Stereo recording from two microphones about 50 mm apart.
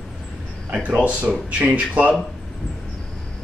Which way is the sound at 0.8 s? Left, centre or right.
Right.